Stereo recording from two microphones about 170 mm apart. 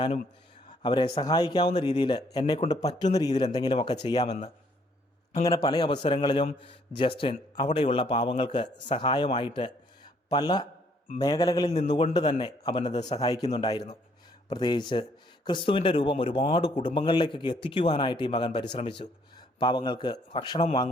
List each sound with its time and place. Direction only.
0.7 s a man's voice: 30° left (ahead or behind)
5.6 s a man's voice: 25° left (ahead or behind)
11.7 s a man's voice: 35° left (ahead or behind)